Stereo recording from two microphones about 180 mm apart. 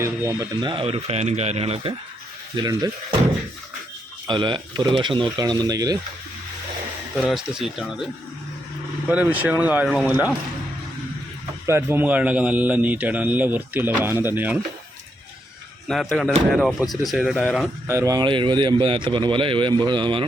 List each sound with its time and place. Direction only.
0.0 s a man's voice: 15° right (ahead or behind)
4.3 s a man's voice: 25° right (ahead or behind)
7.2 s speech: centre (ahead or behind)
9.0 s a man's voice: 10° right (ahead or behind)
11.6 s a man's voice: 15° right (ahead or behind)
15.9 s speech: centre (ahead or behind)
17.8 s a man's voice: 15° right (ahead or behind)